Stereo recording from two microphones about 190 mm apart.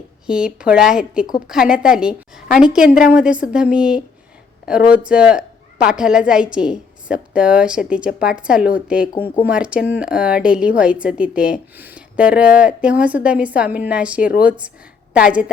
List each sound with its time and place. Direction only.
0.3 s a woman's voice: 5° right (ahead or behind)
2.9 s a woman's voice: 45° left (ahead or behind)
3.2 s a woman's voice: 5° right (ahead or behind)